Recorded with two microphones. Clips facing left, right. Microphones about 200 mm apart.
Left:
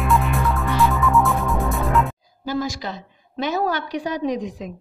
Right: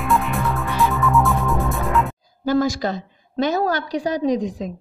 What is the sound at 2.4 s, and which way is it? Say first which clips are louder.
A woman's voice: right 6 dB; 50° right (ahead or behind).